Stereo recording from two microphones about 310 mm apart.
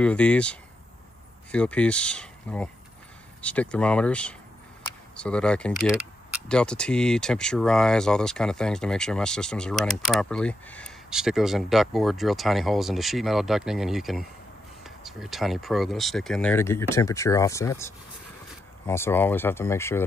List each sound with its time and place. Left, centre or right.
0.0 s speech: centre